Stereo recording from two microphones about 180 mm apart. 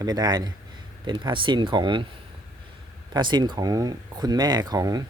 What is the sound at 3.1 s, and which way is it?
Speech, 25° right (ahead or behind).